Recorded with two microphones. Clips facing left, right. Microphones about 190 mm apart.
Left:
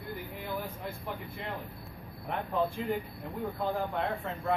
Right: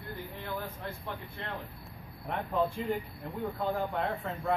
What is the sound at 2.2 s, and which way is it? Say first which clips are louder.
Speech: even; centre (ahead or behind).